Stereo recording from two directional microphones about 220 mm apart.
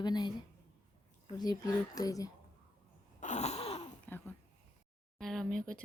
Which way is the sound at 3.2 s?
30° left (ahead or behind).